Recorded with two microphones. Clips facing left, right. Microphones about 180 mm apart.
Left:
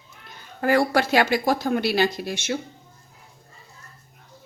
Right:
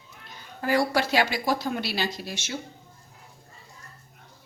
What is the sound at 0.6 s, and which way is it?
Speech, 55° left (ahead or behind).